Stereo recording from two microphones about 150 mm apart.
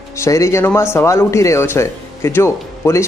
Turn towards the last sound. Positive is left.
turn(degrees=15)  # may be behind; listen again after turning